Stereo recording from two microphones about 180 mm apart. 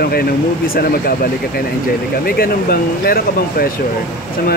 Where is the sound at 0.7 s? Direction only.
55° left (ahead or behind).